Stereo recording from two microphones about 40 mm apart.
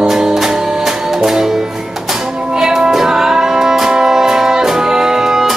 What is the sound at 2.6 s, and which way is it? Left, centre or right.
Music, centre.